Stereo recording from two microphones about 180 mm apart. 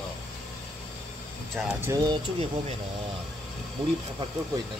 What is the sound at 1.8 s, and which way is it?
Speech, 20° right (ahead or behind).